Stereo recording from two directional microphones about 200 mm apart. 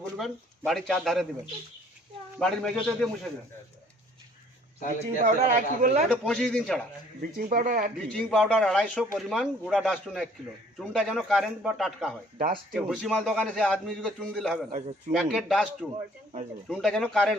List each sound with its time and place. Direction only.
0.0 s speech: centre (ahead or behind)
2.4 s a man's voice: 5° left (ahead or behind)
4.9 s speech: 35° right (ahead or behind)
6.1 s a man's voice: 5° left (ahead or behind)
7.4 s speech: 40° right (ahead or behind)
8.0 s a man's voice: 5° left (ahead or behind)
14.7 s speech: 30° right (ahead or behind)
15.1 s a man's voice: centre (ahead or behind)